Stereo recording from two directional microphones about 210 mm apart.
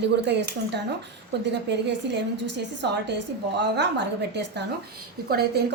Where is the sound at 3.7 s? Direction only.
55° right (ahead or behind).